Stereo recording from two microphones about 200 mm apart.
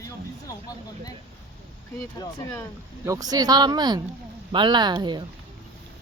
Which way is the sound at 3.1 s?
20° right (ahead or behind).